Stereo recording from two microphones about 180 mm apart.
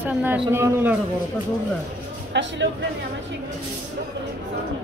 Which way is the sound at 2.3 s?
75° right (ahead or behind).